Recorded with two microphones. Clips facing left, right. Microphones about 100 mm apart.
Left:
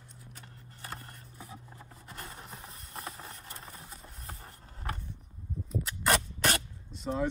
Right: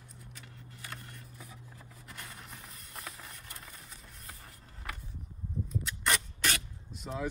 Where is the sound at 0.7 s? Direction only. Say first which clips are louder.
Left 3 dB; 35° left (ahead or behind).